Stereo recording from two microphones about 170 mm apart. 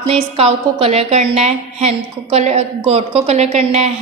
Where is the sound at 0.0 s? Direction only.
35° right (ahead or behind).